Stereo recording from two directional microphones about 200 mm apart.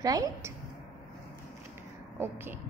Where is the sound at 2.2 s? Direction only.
10° right (ahead or behind).